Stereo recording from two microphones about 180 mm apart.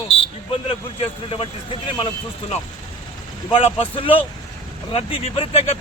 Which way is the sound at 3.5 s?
30° left (ahead or behind).